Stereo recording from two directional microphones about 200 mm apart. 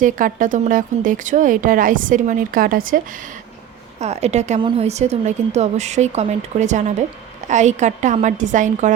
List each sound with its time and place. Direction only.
0.0 s speech: 40° right (ahead or behind)
4.0 s speech: 35° right (ahead or behind)